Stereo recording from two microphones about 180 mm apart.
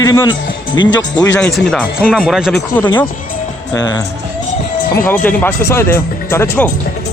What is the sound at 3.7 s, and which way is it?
Speech, 20° left (ahead or behind).